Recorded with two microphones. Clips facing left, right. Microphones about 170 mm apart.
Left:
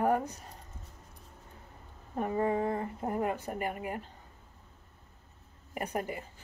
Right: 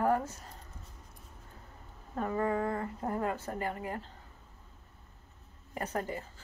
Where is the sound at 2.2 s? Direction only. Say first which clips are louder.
Left 2 dB; 25° left (ahead or behind).